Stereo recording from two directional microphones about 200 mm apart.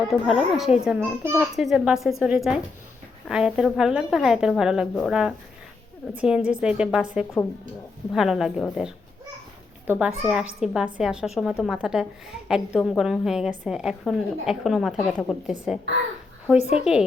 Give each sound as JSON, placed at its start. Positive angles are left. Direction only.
{"t": 0.1, "sound": "a woman's voice", "side_deg": 0}
{"t": 16.6, "sound": "a woman's voice", "side_deg": 30}
{"t": 16.8, "sound": "a woman's voice", "side_deg": -5}